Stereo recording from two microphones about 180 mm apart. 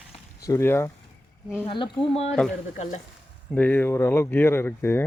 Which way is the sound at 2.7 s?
40° left (ahead or behind).